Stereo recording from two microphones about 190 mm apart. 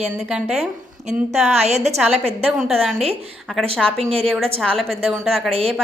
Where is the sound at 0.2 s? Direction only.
Centre (ahead or behind).